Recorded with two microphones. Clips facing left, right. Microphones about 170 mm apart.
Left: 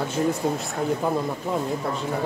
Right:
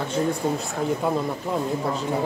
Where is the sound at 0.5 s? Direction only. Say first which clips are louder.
Even; centre (ahead or behind).